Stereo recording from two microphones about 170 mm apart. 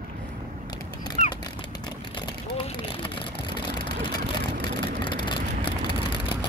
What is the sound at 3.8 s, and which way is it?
Vehicle, 25° left (ahead or behind).